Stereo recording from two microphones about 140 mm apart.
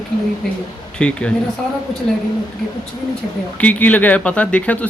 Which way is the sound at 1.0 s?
5° left (ahead or behind).